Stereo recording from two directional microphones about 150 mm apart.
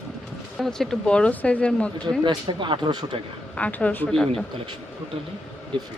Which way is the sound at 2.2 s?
30° right (ahead or behind).